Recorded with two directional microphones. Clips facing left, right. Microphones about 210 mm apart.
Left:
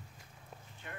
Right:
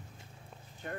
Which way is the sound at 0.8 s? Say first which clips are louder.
Right 8 dB; 40° right (ahead or behind).